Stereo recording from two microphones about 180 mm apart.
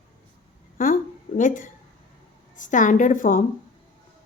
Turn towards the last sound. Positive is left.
turn(degrees=45)  # may be behind; listen again after turning